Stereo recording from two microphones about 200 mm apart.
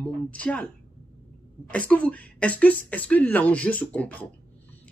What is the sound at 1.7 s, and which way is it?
Speech, 5° left (ahead or behind).